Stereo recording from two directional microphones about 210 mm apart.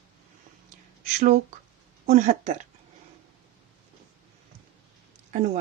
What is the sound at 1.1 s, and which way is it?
Speech, 40° right (ahead or behind).